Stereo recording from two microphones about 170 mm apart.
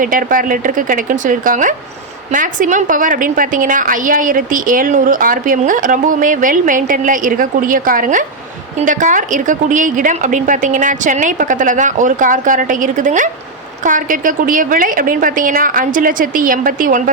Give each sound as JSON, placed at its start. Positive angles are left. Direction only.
{"t": 0.0, "sound": "a woman's voice", "side_deg": -55}